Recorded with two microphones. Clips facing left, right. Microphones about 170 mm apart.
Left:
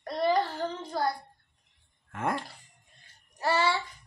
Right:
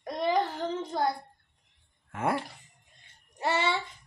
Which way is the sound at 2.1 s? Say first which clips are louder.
Right 2 dB; 5° right (ahead or behind).